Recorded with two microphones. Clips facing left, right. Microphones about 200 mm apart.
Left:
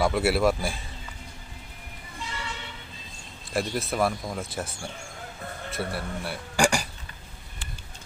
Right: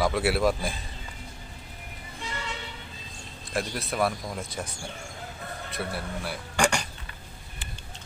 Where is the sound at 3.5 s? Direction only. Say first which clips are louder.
Left 3 dB; centre (ahead or behind).